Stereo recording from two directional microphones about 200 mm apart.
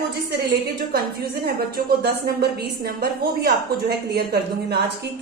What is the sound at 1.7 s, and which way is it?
A woman's voice, 50° right (ahead or behind).